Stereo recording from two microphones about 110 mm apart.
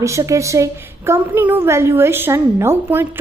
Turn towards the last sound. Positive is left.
turn(degrees=-20)  # may be behind; listen again after turning